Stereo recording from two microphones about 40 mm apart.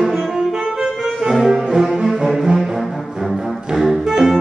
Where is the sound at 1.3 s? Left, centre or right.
Centre.